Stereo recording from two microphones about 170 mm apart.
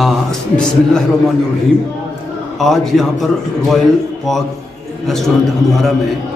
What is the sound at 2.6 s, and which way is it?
A man's voice, centre (ahead or behind).